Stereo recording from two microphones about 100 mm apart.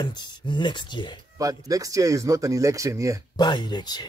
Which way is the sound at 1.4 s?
35° right (ahead or behind).